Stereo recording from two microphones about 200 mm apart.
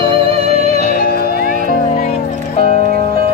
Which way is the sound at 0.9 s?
50° left (ahead or behind).